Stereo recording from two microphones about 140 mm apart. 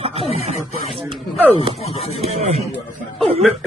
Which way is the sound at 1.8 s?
45° left (ahead or behind).